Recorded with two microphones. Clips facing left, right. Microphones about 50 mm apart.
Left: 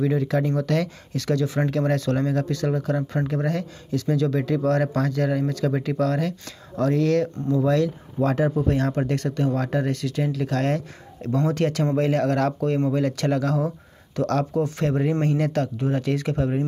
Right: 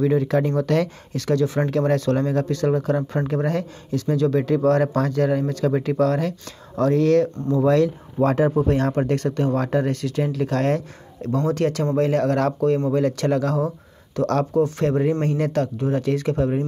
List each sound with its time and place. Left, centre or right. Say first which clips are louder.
0.0 s speech: right 3 dB; right
7.4 s speech: right 3 dB; right
8.9 s speech: right 3 dB; centre
11.3 s speech: right 1 dB; centre
15.0 s speech: even; centre
15.8 s speech: right 2 dB; centre